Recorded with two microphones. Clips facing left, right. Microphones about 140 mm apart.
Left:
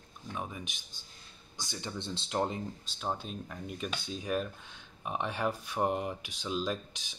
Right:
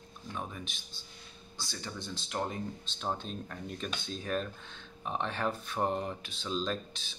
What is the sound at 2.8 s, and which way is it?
Speech, 10° left (ahead or behind).